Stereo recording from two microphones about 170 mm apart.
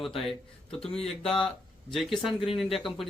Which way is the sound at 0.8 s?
35° left (ahead or behind).